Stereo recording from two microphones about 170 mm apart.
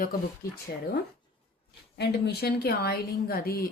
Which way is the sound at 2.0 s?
70° left (ahead or behind).